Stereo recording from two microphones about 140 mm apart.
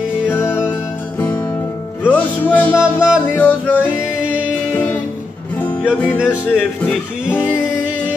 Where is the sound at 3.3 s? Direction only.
10° left (ahead or behind).